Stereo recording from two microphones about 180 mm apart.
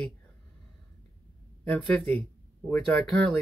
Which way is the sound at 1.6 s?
5° left (ahead or behind).